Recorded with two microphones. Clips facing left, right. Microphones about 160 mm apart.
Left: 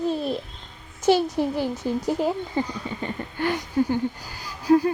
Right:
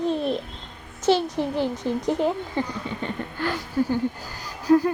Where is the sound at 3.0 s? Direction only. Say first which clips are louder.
Left 2 dB; 20° left (ahead or behind).